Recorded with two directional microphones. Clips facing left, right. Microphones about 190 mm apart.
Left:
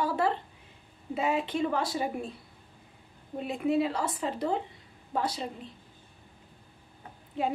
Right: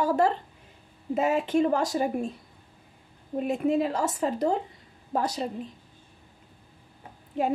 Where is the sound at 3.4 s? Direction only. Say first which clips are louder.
Right 2 dB; 45° right (ahead or behind).